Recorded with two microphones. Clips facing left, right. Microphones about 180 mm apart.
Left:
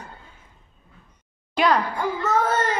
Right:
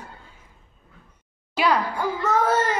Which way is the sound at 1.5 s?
10° right (ahead or behind).